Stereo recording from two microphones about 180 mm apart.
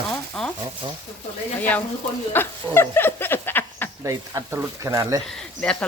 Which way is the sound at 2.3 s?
10° left (ahead or behind).